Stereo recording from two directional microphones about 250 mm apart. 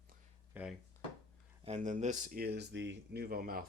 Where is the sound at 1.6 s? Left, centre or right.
Right.